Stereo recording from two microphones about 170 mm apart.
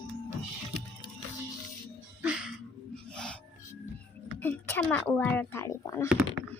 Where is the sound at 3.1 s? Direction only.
5° left (ahead or behind).